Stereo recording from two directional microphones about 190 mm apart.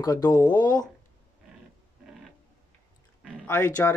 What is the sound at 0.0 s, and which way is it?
Speech, 20° left (ahead or behind).